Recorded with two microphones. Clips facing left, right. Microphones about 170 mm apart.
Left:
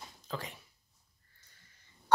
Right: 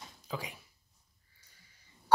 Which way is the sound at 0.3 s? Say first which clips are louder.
Right 1 dB; 10° right (ahead or behind).